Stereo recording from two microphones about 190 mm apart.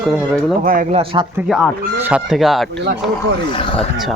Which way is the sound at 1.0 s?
30° right (ahead or behind).